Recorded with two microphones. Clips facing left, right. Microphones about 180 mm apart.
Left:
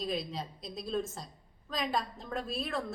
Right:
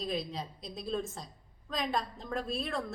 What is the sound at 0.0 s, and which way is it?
A woman's voice, centre (ahead or behind).